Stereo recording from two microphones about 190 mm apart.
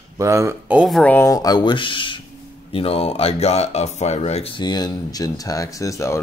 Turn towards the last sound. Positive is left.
turn(degrees=15)  # may be behind; listen again after turning